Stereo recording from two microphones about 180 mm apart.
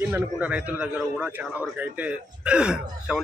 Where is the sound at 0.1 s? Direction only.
10° right (ahead or behind).